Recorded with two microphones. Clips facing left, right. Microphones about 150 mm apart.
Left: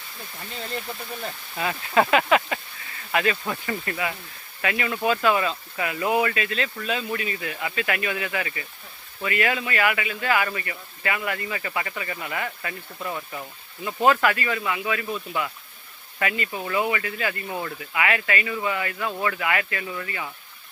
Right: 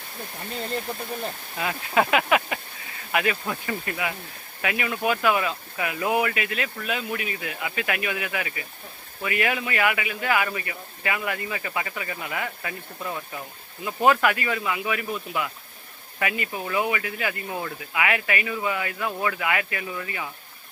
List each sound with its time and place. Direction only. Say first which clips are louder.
0.9 s speech: right 3 dB; 35° right (ahead or behind)
1.5 s speech: left 2 dB; 5° right (ahead or behind)
13.0 s speech: left 1 dB; centre (ahead or behind)
13.8 s speech: even; 15° right (ahead or behind)